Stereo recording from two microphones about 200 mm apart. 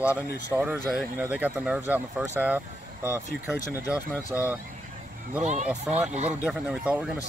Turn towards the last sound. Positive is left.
turn(degrees=-5)  # may be behind; listen again after turning